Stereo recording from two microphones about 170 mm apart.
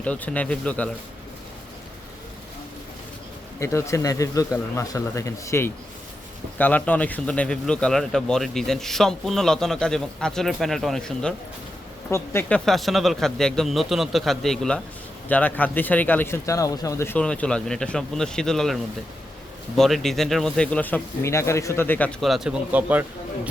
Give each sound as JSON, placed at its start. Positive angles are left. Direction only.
{"t": 0.0, "sound": "a man's voice", "side_deg": 5}
{"t": 3.6, "sound": "a man's voice", "side_deg": 15}